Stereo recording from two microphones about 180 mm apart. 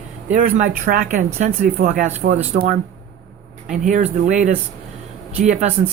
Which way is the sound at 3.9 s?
40° right (ahead or behind).